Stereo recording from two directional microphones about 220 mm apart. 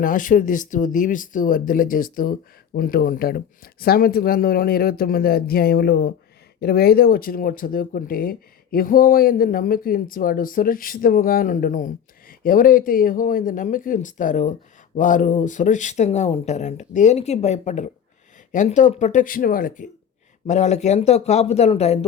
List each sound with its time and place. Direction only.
0.0 s speech: 35° left (ahead or behind)